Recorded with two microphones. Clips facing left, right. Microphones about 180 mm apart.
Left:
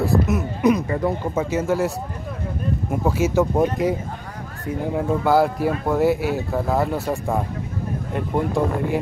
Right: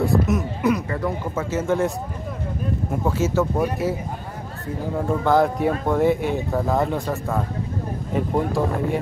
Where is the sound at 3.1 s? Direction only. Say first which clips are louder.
Left 2 dB; 10° left (ahead or behind).